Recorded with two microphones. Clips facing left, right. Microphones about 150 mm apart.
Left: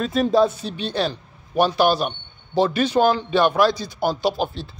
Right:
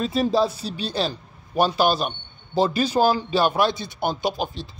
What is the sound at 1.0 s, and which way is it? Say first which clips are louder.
A man's voice: left 2 dB; centre (ahead or behind).